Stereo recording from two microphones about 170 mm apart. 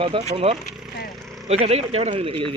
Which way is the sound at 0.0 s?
35° right (ahead or behind).